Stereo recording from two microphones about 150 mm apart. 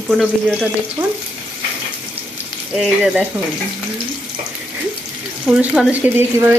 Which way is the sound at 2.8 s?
5° right (ahead or behind).